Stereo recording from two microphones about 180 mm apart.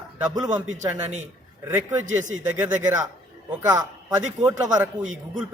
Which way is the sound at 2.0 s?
45° right (ahead or behind).